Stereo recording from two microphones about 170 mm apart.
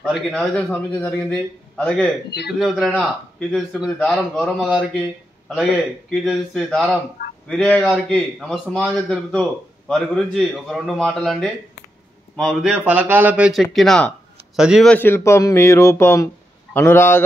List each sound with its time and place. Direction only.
0.0 s speech: 5° left (ahead or behind)
14.9 s speech: 10° left (ahead or behind)